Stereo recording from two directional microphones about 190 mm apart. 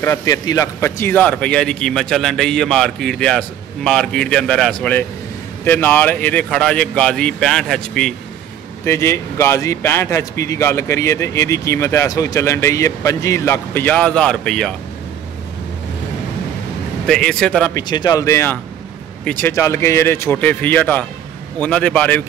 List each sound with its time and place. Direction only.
0.0 s a man's voice: 15° left (ahead or behind)
8.8 s speech: 15° left (ahead or behind)
17.0 s a man's voice: 5° left (ahead or behind)
17.7 s speech: 20° left (ahead or behind)